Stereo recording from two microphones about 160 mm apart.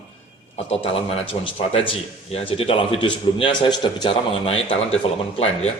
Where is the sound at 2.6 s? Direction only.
35° left (ahead or behind).